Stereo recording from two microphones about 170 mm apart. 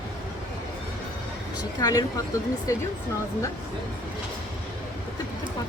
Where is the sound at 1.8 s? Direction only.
20° left (ahead or behind).